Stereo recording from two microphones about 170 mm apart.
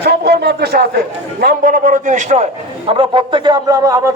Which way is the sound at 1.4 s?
50° right (ahead or behind).